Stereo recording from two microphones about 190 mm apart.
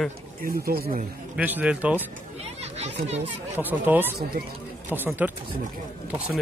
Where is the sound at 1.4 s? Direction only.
10° right (ahead or behind).